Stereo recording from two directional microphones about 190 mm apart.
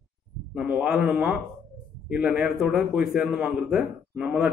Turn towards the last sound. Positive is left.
turn(degrees=-5)  # may be behind; listen again after turning